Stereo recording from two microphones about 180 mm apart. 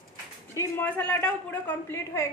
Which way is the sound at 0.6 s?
10° left (ahead or behind).